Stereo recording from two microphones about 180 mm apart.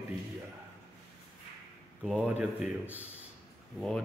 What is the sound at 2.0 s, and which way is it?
Speech, 5° right (ahead or behind).